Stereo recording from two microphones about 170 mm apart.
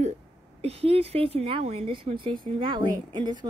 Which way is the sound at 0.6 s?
35° right (ahead or behind).